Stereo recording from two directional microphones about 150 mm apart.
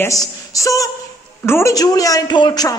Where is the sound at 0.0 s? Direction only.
20° left (ahead or behind).